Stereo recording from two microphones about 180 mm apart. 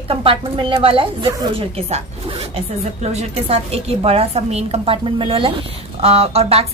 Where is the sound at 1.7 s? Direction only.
35° right (ahead or behind).